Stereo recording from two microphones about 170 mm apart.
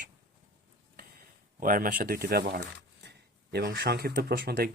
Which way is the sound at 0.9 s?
55° right (ahead or behind).